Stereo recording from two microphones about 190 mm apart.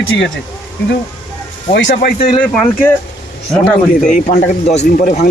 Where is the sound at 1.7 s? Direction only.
65° left (ahead or behind).